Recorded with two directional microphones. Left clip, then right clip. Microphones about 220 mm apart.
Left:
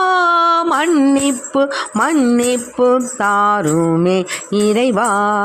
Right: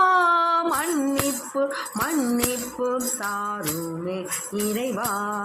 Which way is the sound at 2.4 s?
45° left (ahead or behind).